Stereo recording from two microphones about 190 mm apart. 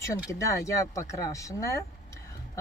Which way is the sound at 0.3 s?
15° left (ahead or behind).